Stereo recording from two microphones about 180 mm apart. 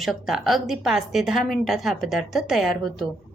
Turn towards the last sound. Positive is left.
turn(degrees=0)  # may be behind; listen again after turning